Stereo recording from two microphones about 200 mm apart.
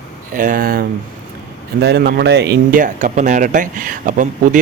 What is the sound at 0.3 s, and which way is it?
Speech, 45° right (ahead or behind).